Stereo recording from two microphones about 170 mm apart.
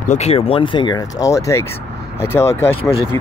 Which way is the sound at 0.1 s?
40° left (ahead or behind).